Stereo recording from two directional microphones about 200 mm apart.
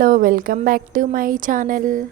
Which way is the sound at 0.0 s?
45° right (ahead or behind).